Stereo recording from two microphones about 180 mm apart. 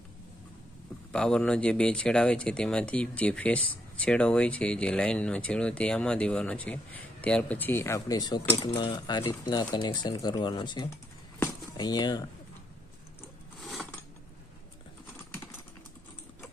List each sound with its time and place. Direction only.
1.1 s speech: 5° left (ahead or behind); by 10.9 s 25° left (ahead or behind)
11.3 s a sound: 20° left (ahead or behind)
13.6 s mechanisms: centre (ahead or behind)